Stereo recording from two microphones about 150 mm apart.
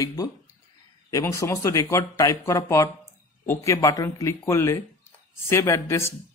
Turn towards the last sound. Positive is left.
turn(degrees=20)  # may be behind; listen again after turning